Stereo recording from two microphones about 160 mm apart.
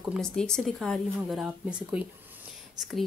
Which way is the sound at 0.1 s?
5° left (ahead or behind).